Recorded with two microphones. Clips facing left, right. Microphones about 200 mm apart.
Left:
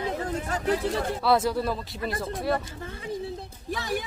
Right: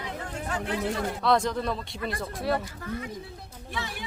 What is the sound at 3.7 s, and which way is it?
Speech, 40° left (ahead or behind).